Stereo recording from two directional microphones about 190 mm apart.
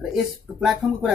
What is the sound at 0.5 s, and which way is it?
Speech, centre (ahead or behind).